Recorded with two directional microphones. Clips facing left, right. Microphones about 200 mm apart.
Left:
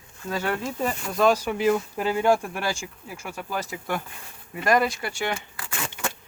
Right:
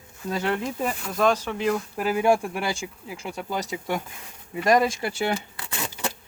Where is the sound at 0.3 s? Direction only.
25° right (ahead or behind).